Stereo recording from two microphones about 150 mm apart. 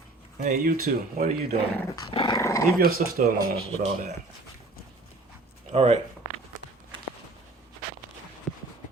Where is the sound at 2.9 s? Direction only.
80° right.